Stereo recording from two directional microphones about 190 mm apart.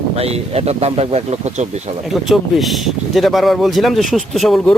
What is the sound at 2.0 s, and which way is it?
Speech, centre (ahead or behind).